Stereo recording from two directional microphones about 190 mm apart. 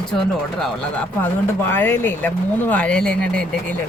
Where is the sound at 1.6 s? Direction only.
10° left (ahead or behind).